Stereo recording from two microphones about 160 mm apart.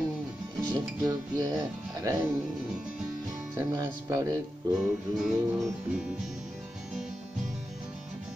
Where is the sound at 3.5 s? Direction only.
20° right (ahead or behind).